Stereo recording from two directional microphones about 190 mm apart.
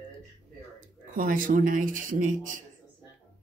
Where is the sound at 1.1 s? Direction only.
45° right (ahead or behind).